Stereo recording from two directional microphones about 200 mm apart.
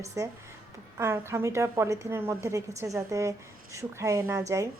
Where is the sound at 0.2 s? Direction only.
15° right (ahead or behind).